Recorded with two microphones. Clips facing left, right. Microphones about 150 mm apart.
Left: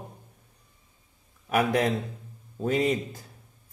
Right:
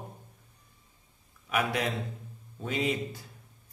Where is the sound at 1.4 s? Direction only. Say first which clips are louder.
Left 6 dB; 40° left (ahead or behind).